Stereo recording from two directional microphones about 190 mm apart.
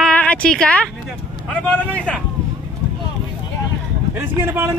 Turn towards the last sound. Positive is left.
turn(degrees=-15)  # may be behind; listen again after turning